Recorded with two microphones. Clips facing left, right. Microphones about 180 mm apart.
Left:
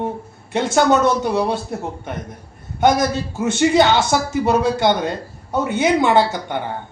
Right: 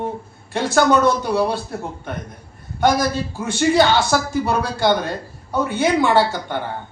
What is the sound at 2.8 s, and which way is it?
A man's voice, 20° left (ahead or behind).